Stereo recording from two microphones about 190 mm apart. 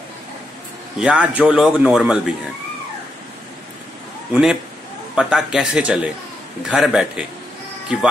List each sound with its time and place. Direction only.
0.9 s a man's voice: 5° right (ahead or behind)
4.3 s a man's voice: 5° right (ahead or behind)